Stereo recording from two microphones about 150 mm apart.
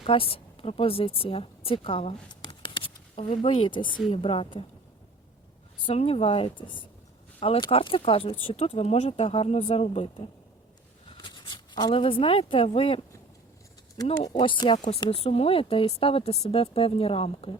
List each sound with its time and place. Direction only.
0.0 s speech: 40° left (ahead or behind)
5.8 s speech: 40° left (ahead or behind)
14.3 s speech: 30° left (ahead or behind)